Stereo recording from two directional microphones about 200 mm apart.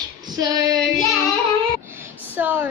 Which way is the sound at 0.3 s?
15° right (ahead or behind).